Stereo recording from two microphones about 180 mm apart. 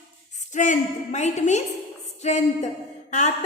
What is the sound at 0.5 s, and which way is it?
A woman's voice, 45° left (ahead or behind).